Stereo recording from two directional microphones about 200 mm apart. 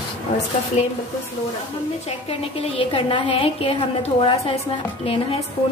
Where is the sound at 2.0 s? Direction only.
30° left (ahead or behind).